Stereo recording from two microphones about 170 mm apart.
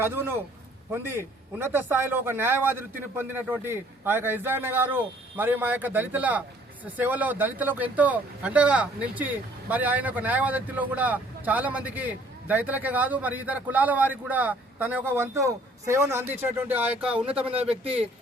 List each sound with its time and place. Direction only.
0.0 s speech: 15° right (ahead or behind)
17.8 s speech: 35° right (ahead or behind)